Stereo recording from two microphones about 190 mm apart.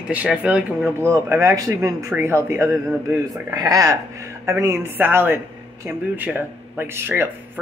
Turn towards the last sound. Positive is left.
turn(degrees=-10)  # may be behind; listen again after turning